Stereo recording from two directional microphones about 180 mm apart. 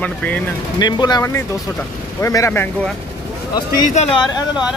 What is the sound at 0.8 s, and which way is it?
Speech, 25° left (ahead or behind).